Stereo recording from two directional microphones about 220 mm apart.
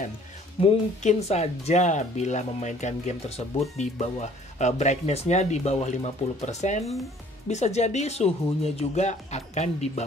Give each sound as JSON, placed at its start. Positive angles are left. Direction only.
{"t": 0.6, "sound": "speech", "side_deg": 25}